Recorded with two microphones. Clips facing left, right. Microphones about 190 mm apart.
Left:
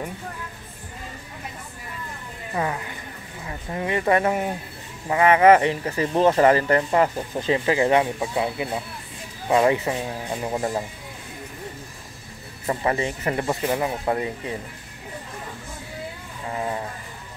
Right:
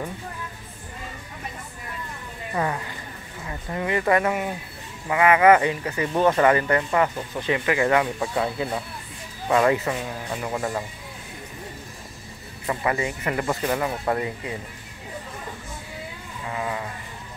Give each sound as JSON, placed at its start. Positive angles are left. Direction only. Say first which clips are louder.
{"t": 2.5, "sound": "speech", "louder": "even", "side_deg": 10}
{"t": 3.4, "sound": "speech", "louder": "even", "side_deg": 20}
{"t": 12.6, "sound": "speech", "louder": "left 1 dB", "side_deg": 30}
{"t": 16.4, "sound": "speech", "louder": "left 2 dB", "side_deg": 35}